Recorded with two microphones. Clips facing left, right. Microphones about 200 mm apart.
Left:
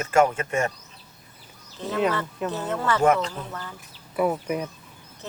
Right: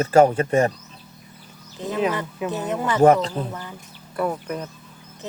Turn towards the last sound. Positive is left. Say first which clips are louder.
# right 4 dB
turn(degrees=-20)  # may be behind; listen again after turning